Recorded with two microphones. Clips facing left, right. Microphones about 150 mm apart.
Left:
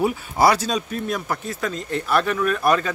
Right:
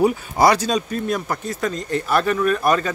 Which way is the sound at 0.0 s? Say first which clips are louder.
Right 2 dB; 5° left (ahead or behind).